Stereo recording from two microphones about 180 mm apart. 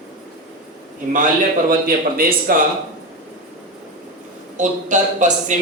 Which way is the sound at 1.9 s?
55° right (ahead or behind).